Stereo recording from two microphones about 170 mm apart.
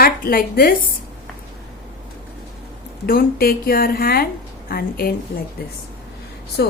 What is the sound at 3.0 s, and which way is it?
A woman's voice, 60° left (ahead or behind).